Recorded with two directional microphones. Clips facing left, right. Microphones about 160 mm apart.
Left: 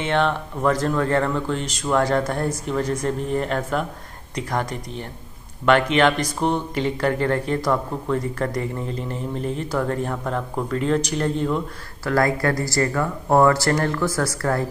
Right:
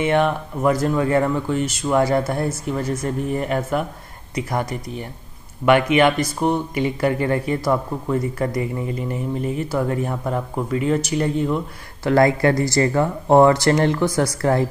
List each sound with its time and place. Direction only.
0.0 s speech: 10° right (ahead or behind)
12.0 s speech: 20° right (ahead or behind)